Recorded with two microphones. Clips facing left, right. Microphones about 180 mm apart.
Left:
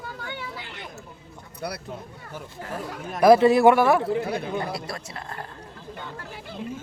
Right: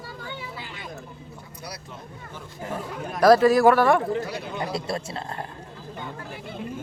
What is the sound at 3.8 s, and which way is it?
Speech, 10° left (ahead or behind).